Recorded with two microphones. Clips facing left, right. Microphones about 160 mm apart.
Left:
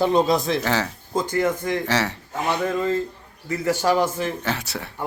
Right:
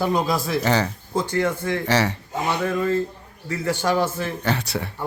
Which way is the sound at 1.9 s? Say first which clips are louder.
Right 5 dB; centre (ahead or behind).